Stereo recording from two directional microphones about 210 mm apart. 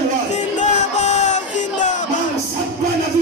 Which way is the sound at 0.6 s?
35° left (ahead or behind).